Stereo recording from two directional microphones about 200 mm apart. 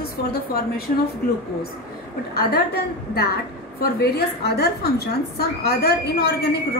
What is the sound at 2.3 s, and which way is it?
A woman's voice, 50° left (ahead or behind).